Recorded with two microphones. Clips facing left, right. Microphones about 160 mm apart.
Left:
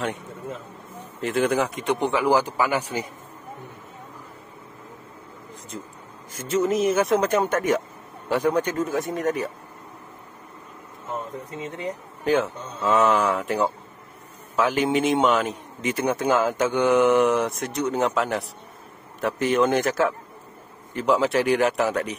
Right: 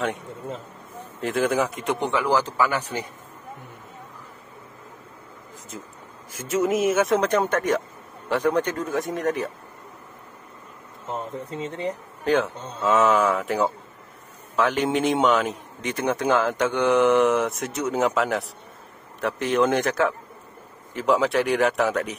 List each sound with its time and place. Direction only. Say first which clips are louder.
1.2 s speech: even; centre (ahead or behind)
6.5 s a man's voice: even; 5° right (ahead or behind)
11.5 s speech: right 3 dB; 30° right (ahead or behind)
12.3 s a man's voice: even; centre (ahead or behind)